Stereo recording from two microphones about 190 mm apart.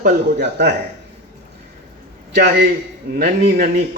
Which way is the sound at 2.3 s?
60° right (ahead or behind).